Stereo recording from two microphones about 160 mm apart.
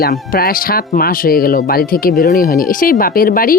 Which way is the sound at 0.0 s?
75° left (ahead or behind).